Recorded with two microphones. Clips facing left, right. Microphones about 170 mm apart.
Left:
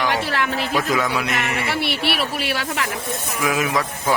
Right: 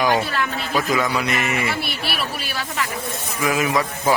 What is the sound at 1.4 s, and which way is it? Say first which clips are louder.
Speech: even; 75° left (ahead or behind).